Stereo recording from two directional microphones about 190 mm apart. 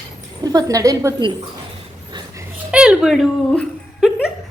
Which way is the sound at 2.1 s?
25° right (ahead or behind).